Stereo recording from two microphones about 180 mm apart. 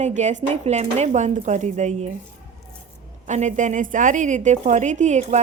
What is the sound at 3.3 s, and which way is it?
A woman's voice, 40° right (ahead or behind).